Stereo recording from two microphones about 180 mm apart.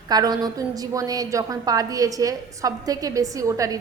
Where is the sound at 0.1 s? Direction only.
20° right (ahead or behind).